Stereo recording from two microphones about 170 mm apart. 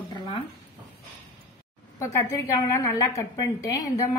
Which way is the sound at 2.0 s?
20° left (ahead or behind).